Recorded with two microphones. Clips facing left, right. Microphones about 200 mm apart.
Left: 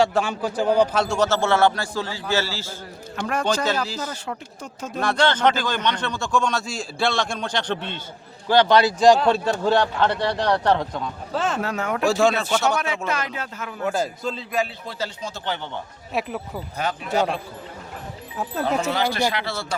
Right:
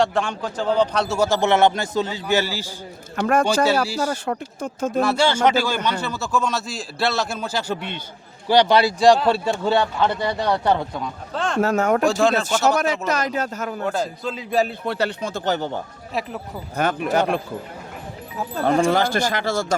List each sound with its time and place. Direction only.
0.0 s a man's voice: centre (ahead or behind)
0.9 s speech: 5° right (ahead or behind)
3.2 s speech: 50° right (ahead or behind)
4.9 s a man's voice: 5° right (ahead or behind)
11.6 s speech: 45° right (ahead or behind)
12.0 s a man's voice: centre (ahead or behind)
13.1 s speech: 40° right (ahead or behind)
13.8 s a man's voice: 5° left (ahead or behind)
14.8 s speech: 65° right (ahead or behind); by 15.8 s 40° right (ahead or behind)
16.1 s a man's voice: centre (ahead or behind)
16.7 s speech: 55° right (ahead or behind)
18.6 s speech: 50° right (ahead or behind)